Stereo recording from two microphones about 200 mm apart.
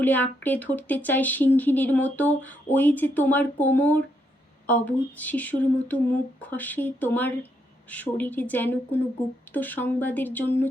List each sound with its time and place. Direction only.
0.0 s speech: 10° left (ahead or behind)